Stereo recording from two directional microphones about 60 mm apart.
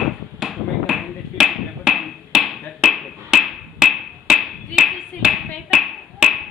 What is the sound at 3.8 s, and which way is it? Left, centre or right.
Clapping, centre.